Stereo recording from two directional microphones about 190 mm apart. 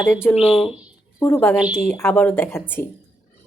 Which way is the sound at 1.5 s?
5° right (ahead or behind).